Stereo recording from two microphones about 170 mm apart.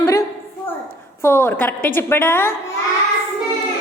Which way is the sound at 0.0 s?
15° left (ahead or behind).